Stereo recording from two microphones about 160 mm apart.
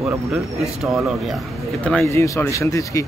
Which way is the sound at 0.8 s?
5° right (ahead or behind).